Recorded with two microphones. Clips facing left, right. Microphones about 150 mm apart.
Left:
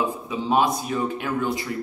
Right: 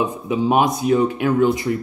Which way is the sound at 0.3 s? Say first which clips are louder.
Right 5 dB; 15° right (ahead or behind).